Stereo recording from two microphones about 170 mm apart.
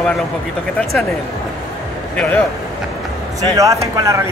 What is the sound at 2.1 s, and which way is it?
Speech, 10° left (ahead or behind).